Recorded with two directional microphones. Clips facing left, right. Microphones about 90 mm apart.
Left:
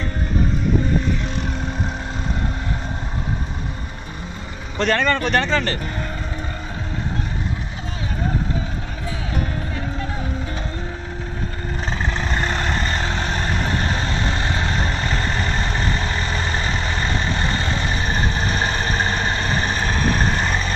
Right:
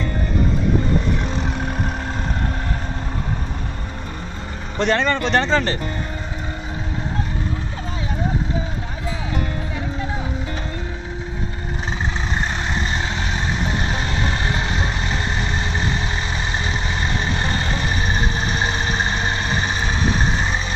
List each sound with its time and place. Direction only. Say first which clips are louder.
4.7 s speech: even; 20° right (ahead or behind)
12.8 s vehicle: left 1 dB; 45° left (ahead or behind)
17.4 s vehicle: even; 25° right (ahead or behind)
17.9 s vehicle: even; 40° left (ahead or behind)